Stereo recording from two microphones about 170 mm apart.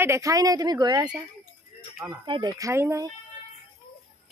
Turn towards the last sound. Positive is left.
turn(degrees=-15)  # may be behind; listen again after turning